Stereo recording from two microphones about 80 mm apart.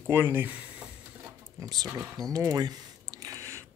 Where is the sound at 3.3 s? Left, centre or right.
Right.